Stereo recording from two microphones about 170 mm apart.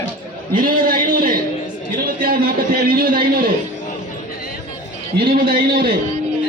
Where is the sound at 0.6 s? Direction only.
55° right (ahead or behind).